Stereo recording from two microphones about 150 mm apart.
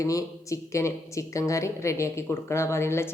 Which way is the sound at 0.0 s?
20° left (ahead or behind).